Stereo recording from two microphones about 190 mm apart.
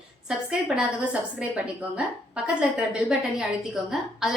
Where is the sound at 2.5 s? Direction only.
5° right (ahead or behind).